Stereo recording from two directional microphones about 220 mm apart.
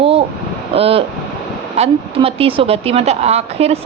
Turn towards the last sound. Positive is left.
turn(degrees=-30)  # may be behind; listen again after turning